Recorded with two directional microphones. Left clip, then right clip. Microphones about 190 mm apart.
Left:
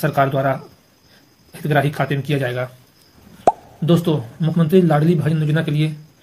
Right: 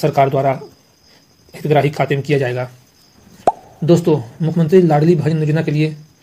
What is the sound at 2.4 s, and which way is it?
Speech, 25° right (ahead or behind).